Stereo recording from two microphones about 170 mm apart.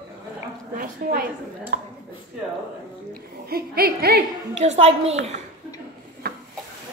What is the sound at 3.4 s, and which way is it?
Speech, 65° right (ahead or behind).